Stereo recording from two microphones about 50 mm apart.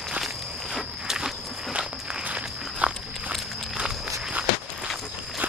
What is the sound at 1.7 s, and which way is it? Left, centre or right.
Walk, right.